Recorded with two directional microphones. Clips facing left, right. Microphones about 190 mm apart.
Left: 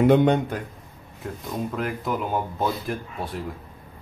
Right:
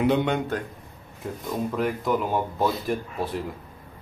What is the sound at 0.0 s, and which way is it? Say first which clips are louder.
Speech: left 5 dB; 45° left (ahead or behind).